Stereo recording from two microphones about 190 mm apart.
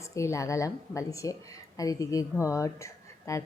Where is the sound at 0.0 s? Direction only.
15° left (ahead or behind).